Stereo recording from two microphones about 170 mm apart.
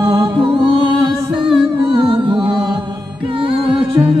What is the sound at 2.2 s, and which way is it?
Music, 30° right (ahead or behind).